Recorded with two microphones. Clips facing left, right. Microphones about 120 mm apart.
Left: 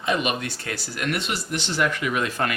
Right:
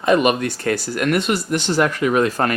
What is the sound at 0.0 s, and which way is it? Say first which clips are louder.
Speech: right 9 dB; 50° right (ahead or behind).